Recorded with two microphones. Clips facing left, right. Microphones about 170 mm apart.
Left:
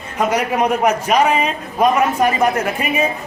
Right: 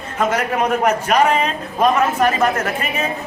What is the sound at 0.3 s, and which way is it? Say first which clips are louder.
A man's voice: left 2 dB; 10° left (ahead or behind).